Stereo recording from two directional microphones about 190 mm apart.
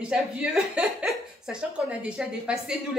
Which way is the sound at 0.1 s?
Centre (ahead or behind).